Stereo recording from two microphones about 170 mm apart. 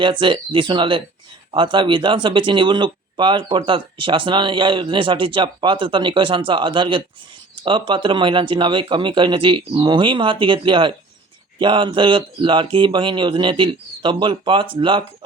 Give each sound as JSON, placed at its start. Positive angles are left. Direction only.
{"t": 0.0, "sound": "speech", "side_deg": -30}